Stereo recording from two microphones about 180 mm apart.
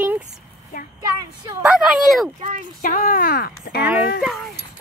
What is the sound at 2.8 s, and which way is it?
Speech, 50° left (ahead or behind).